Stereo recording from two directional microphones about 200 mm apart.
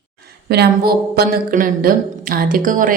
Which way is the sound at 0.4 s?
55° right (ahead or behind).